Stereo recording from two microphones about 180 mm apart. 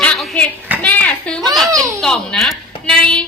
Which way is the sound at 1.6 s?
20° right (ahead or behind).